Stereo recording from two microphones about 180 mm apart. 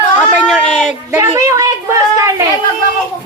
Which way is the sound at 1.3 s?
20° right (ahead or behind).